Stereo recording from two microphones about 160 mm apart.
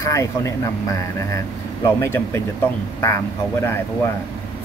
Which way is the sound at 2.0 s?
15° left (ahead or behind).